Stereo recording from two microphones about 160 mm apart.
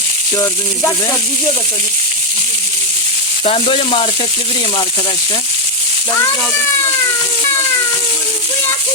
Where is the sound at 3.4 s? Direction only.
40° left (ahead or behind).